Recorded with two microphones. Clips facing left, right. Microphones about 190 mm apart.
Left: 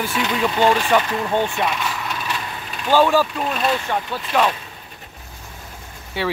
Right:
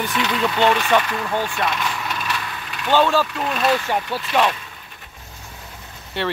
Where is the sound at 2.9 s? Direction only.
10° left (ahead or behind).